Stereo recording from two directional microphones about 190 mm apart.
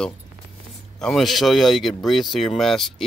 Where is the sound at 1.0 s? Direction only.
Centre (ahead or behind).